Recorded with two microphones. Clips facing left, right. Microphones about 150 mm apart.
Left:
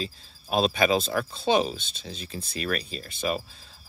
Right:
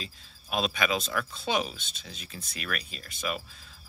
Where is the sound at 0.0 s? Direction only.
35° left (ahead or behind).